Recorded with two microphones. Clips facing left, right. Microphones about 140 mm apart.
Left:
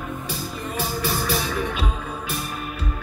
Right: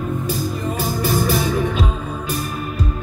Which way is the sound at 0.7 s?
45° right (ahead or behind).